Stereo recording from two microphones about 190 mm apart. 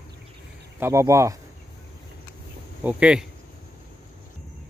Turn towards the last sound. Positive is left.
turn(degrees=-5)  # may be behind; listen again after turning